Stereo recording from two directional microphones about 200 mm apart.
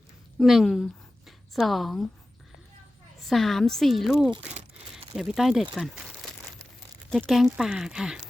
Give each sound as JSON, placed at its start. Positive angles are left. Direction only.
{"t": 0.3, "sound": "speech", "side_deg": 0}
{"t": 3.2, "sound": "speech", "side_deg": 0}
{"t": 4.4, "sound": "crumpling", "side_deg": -35}
{"t": 5.1, "sound": "speech", "side_deg": 0}
{"t": 7.1, "sound": "speech", "side_deg": 0}